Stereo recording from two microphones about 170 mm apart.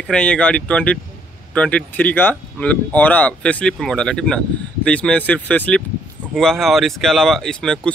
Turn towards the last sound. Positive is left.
turn(degrees=5)  # may be behind; listen again after turning